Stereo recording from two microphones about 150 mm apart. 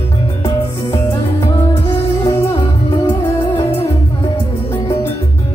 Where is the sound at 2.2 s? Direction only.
25° left (ahead or behind).